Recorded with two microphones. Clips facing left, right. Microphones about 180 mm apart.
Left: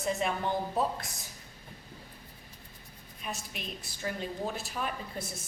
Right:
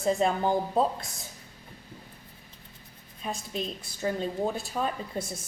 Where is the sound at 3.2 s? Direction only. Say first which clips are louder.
Right 7 dB; 30° right (ahead or behind).